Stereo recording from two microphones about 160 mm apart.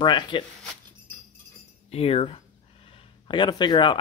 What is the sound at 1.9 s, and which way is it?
Speech, 40° left (ahead or behind).